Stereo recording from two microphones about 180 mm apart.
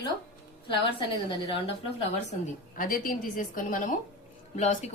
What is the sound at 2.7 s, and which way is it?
A woman's voice, 50° left (ahead or behind).